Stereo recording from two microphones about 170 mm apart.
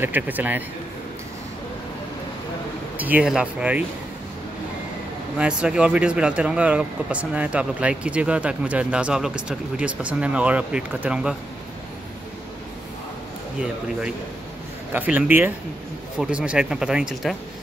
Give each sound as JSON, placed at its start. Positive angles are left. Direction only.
{"t": 0.0, "sound": "speech", "side_deg": -10}
{"t": 3.0, "sound": "speech", "side_deg": -10}
{"t": 5.4, "sound": "speech", "side_deg": -5}
{"t": 14.9, "sound": "speech", "side_deg": -10}